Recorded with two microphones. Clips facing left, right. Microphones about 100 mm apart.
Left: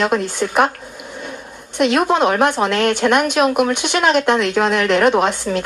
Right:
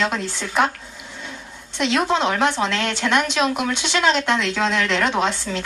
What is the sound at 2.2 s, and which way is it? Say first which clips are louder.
A woman's voice: left 4 dB; 50° left (ahead or behind).